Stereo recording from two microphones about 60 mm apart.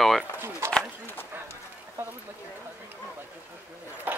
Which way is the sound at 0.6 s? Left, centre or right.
Right.